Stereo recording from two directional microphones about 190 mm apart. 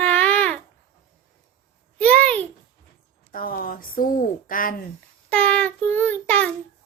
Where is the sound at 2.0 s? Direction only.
5° left (ahead or behind).